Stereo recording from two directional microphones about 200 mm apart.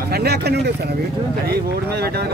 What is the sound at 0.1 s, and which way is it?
Speech, 55° right (ahead or behind).